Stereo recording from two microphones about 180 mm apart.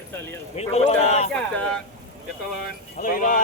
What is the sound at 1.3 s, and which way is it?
Speech, 5° left (ahead or behind).